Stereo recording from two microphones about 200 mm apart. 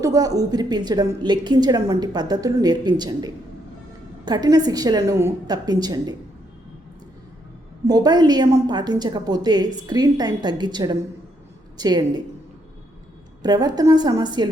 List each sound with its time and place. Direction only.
0.0 s a woman's voice: 20° right (ahead or behind)
7.9 s a woman's voice: 20° right (ahead or behind)
13.4 s a woman's voice: 20° right (ahead or behind)